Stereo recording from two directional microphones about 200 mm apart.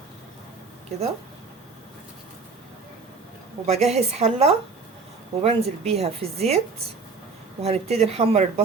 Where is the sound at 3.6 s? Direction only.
35° right (ahead or behind).